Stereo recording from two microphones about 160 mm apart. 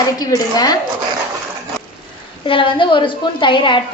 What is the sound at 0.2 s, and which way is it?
Speech, 25° left (ahead or behind).